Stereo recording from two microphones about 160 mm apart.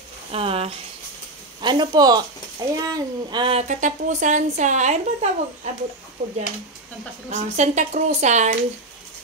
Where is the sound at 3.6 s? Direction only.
50° right (ahead or behind).